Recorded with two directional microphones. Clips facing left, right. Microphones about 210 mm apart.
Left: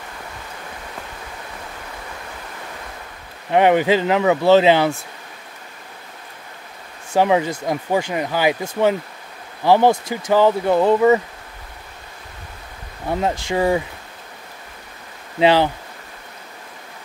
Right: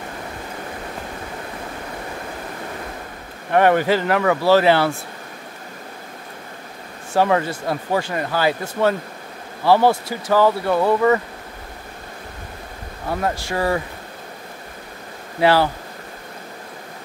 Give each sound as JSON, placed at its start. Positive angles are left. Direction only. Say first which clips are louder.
{"t": 3.5, "sound": "speech", "louder": "left 1 dB", "side_deg": 15}
{"t": 7.2, "sound": "speech", "louder": "left 1 dB", "side_deg": 15}
{"t": 13.2, "sound": "speech", "louder": "left 3 dB", "side_deg": 20}
{"t": 15.3, "sound": "speech", "louder": "left 1 dB", "side_deg": 20}